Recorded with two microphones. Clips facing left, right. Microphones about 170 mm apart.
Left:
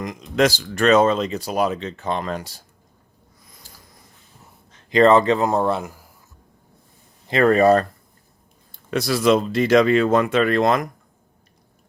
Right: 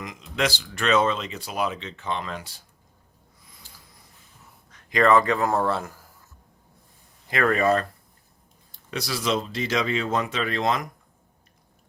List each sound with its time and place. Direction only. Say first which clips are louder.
0.0 s speech: left 8 dB; 40° left (ahead or behind)
3.4 s a sound: left 3 dB; 40° left (ahead or behind)
4.7 s speech: left 5 dB; 25° left (ahead or behind)
7.3 s speech: left 7 dB; 30° left (ahead or behind)
8.7 s speech: left 9 dB; 55° left (ahead or behind)